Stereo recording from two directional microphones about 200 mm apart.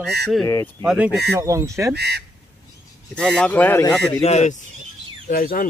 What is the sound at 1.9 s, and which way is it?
Speech, 55° right (ahead or behind).